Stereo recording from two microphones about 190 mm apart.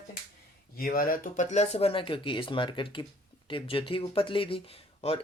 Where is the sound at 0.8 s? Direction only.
50° left (ahead or behind); by 5.2 s 30° left (ahead or behind).